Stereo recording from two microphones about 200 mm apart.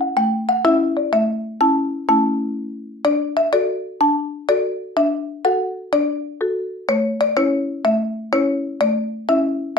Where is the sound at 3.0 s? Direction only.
20° left (ahead or behind).